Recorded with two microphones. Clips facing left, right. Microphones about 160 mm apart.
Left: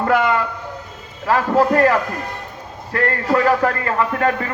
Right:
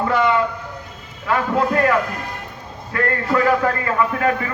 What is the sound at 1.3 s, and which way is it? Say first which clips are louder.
A man's voice: left 3 dB; 40° left (ahead or behind).